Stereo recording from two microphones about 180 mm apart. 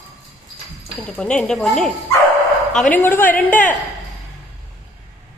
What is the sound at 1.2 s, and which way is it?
A man's voice, 5° left (ahead or behind).